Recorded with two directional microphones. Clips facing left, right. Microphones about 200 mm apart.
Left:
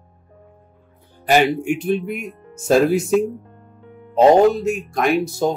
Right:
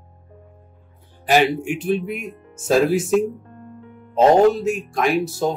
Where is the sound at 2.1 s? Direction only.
40° left (ahead or behind).